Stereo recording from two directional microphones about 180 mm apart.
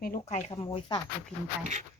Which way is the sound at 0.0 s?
45° left (ahead or behind).